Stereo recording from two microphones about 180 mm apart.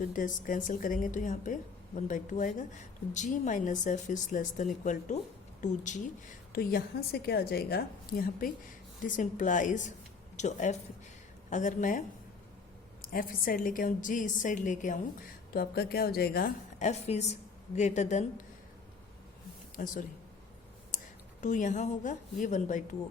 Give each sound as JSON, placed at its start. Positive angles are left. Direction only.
{"t": 0.0, "sound": "a woman's voice", "side_deg": 45}
{"t": 6.5, "sound": "a woman's voice", "side_deg": 55}
{"t": 13.1, "sound": "a woman's voice", "side_deg": 50}
{"t": 15.5, "sound": "a woman's voice", "side_deg": 60}
{"t": 16.8, "sound": "a woman's voice", "side_deg": 40}
{"t": 19.7, "sound": "a woman's voice", "side_deg": 50}
{"t": 20.9, "sound": "a sound", "side_deg": 45}
{"t": 21.4, "sound": "a woman's voice", "side_deg": 45}